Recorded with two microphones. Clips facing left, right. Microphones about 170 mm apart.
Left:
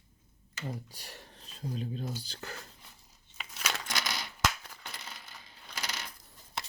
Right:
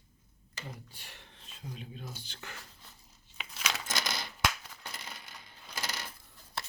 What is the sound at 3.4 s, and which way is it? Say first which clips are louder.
Crumpling: even; centre (ahead or behind).